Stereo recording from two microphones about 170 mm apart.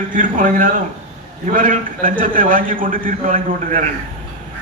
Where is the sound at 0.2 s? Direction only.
50° right (ahead or behind).